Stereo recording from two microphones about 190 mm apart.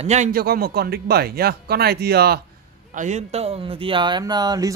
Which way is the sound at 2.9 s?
40° right (ahead or behind).